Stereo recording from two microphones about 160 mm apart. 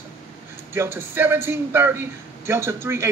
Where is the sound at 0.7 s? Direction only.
15° right (ahead or behind).